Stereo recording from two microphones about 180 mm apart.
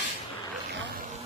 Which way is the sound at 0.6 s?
85° right.